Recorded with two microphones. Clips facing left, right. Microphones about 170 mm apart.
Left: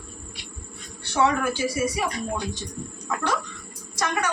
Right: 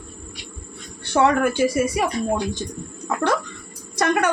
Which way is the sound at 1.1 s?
55° right (ahead or behind).